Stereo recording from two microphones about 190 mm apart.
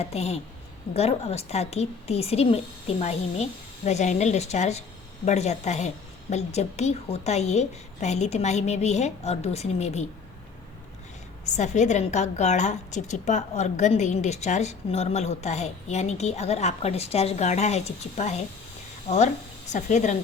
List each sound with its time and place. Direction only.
0.0 s a woman's voice: 35° left (ahead or behind)
11.4 s a woman's voice: 40° left (ahead or behind)